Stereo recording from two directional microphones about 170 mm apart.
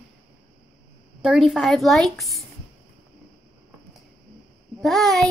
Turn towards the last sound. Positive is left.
turn(degrees=0)  # may be behind; listen again after turning